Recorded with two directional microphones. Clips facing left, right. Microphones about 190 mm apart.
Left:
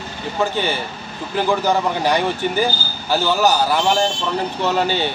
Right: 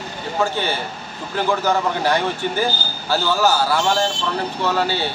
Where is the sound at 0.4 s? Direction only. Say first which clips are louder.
Left 1 dB; 15° left (ahead or behind).